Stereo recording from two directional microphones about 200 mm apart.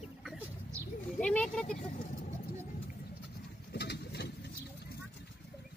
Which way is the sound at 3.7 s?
55° left (ahead or behind).